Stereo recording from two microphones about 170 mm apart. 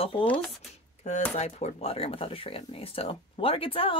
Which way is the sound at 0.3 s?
5° left (ahead or behind).